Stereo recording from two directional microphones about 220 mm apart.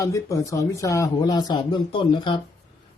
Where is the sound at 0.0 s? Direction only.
15° left (ahead or behind).